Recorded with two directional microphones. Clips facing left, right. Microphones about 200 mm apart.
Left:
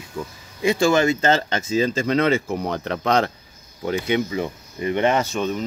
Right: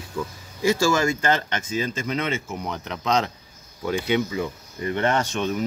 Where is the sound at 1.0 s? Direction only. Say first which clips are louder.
Left 4 dB; 25° left (ahead or behind).